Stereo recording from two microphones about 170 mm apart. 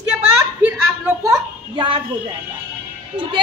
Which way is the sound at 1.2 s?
25° right (ahead or behind).